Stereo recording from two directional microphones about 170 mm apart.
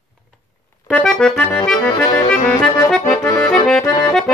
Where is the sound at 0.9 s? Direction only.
5° left (ahead or behind).